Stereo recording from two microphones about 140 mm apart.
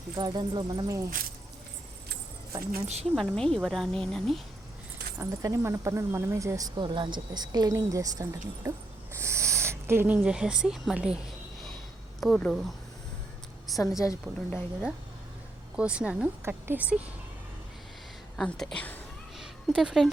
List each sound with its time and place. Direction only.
0.2 s speech: 30° right (ahead or behind)
2.5 s speech: 20° right (ahead or behind)
2.8 s a woman's voice: 50° right (ahead or behind)
3.3 s speech: 5° left (ahead or behind)
5.1 s speech: 20° right (ahead or behind); by 11.2 s 5° right (ahead or behind)
12.2 s speech: 5° left (ahead or behind)
13.7 s speech: centre (ahead or behind)
14.3 s speech: 20° right (ahead or behind)
15.7 s speech: 10° right (ahead or behind)
18.3 s a woman's voice: 5° left (ahead or behind)
19.4 s a sound: centre (ahead or behind)